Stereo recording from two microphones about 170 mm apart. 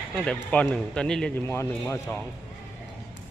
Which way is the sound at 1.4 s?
15° left (ahead or behind).